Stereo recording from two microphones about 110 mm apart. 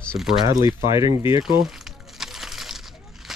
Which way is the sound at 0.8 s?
30° right (ahead or behind).